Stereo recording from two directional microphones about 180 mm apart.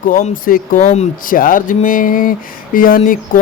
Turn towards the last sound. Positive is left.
turn(degrees=50)  # may be behind; listen again after turning